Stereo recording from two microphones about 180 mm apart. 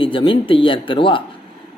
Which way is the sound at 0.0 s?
30° left (ahead or behind).